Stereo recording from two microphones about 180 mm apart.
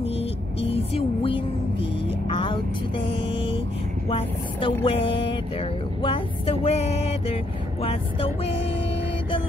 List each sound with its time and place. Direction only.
0.0 s vehicle: 35° left (ahead or behind)
4.1 s speech: 30° left (ahead or behind)
4.8 s music: 30° left (ahead or behind)
7.8 s vehicle: 35° left (ahead or behind)